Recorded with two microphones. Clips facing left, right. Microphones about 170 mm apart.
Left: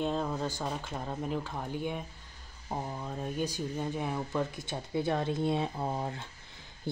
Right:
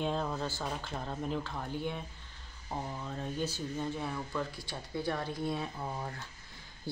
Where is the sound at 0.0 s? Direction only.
5° left (ahead or behind).